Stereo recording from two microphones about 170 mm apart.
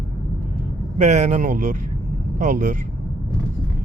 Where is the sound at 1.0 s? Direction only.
45° right (ahead or behind).